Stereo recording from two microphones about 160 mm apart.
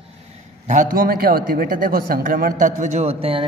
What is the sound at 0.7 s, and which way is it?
A man's voice, 55° right (ahead or behind).